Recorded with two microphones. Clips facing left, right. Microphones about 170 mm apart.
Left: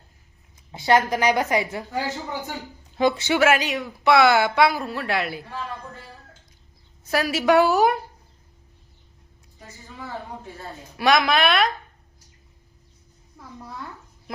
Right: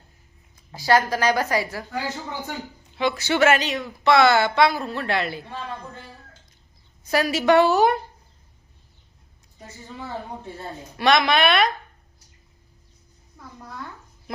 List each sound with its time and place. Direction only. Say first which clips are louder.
0.7 s a woman's voice: even; 20° left (ahead or behind)
2.9 s speech: left 4 dB; 40° left (ahead or behind)
3.3 s speech: even; 5° left (ahead or behind)
5.5 s speech: even; 20° right (ahead or behind)
7.1 s speech: right 1 dB; 5° left (ahead or behind)
10.9 s speech: even; centre (ahead or behind)
13.6 s a sound: even; centre (ahead or behind)